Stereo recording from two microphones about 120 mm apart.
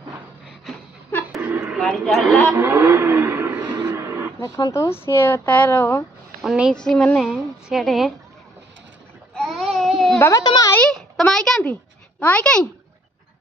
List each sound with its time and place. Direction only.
1.1 s a sound: 15° left (ahead or behind)
1.8 s a woman's voice: 5° left (ahead or behind)
2.5 s vehicle: 20° right (ahead or behind)
3.8 s a sound: 25° right (ahead or behind)
4.4 s speech: 35° left (ahead or behind)
4.7 s a woman's voice: 20° left (ahead or behind)
6.4 s a woman's voice: 5° right (ahead or behind)
6.7 s a woman's voice: 5° left (ahead or behind)
9.3 s a sound: 5° left (ahead or behind)
10.1 s a woman's voice: 25° left (ahead or behind)
10.7 s a child's voice: 10° left (ahead or behind)